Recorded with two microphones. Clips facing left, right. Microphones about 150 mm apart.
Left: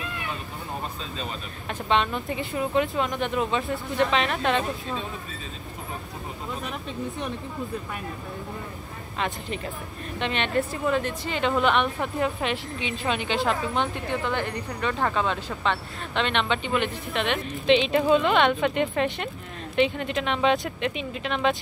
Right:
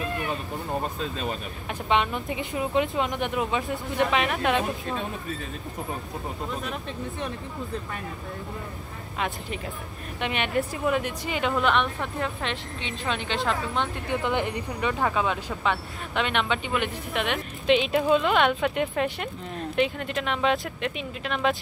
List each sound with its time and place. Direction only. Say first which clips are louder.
1.7 s speech: even; 10° right (ahead or behind)
10.2 s speech: left 1 dB; 10° right (ahead or behind)
11.5 s speech: left 2 dB; centre (ahead or behind)
14.2 s speech: right 1 dB; 15° right (ahead or behind)